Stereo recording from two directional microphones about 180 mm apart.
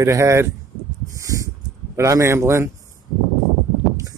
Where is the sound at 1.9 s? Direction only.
15° right (ahead or behind).